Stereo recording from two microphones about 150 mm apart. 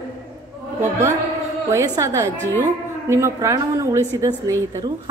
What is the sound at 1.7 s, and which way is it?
A woman's voice, 20° right (ahead or behind).